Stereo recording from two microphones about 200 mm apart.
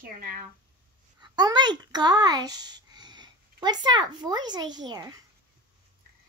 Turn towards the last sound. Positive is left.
turn(degrees=-20)  # may be behind; listen again after turning